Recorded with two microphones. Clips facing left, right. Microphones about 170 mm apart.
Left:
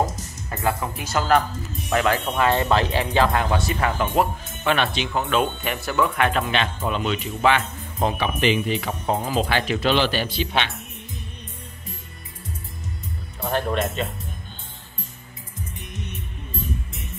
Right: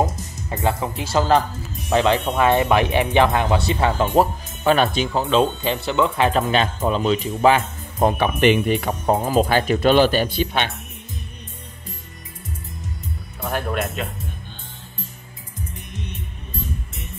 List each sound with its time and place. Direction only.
0.0 s speech: 20° right (ahead or behind); by 5.2 s 40° right (ahead or behind)
5.3 s speech: 25° right (ahead or behind)
8.2 s speech: 55° right (ahead or behind)
13.5 s speech: 5° right (ahead or behind)